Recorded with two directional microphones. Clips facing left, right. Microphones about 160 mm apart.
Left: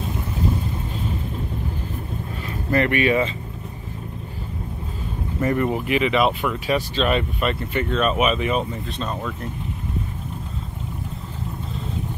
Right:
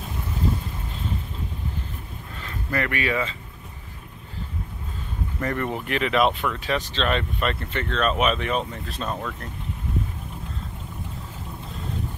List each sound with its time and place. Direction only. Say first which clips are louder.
2.7 s speech: left 7 dB; 25° left (ahead or behind)
5.4 s speech: left 6 dB; 10° left (ahead or behind)